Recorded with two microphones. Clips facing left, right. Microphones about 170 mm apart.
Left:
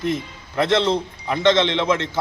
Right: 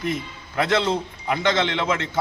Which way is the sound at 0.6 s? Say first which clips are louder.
Left 3 dB; 25° left (ahead or behind).